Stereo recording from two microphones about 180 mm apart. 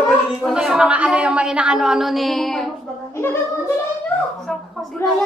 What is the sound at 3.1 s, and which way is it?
Speech, 15° left (ahead or behind).